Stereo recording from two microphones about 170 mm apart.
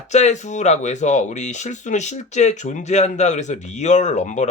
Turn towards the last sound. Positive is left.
turn(degrees=45)  # may be behind; listen again after turning